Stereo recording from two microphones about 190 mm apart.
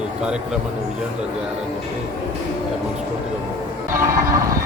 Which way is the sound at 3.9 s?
15° right (ahead or behind).